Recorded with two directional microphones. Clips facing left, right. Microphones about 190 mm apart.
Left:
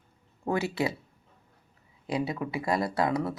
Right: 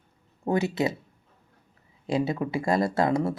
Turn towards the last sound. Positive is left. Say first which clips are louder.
# right 4 dB
turn(degrees=-25)  # may be behind; listen again after turning